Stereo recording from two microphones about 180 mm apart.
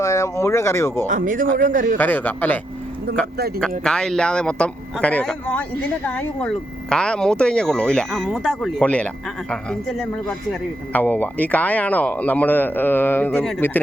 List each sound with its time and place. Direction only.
0.0 s speech: 15° left (ahead or behind)
1.0 s a man's voice: 45° right (ahead or behind)
2.0 s speech: 10° left (ahead or behind)
3.1 s speech: 65° right (ahead or behind)
3.8 s a man's voice: 5° left (ahead or behind)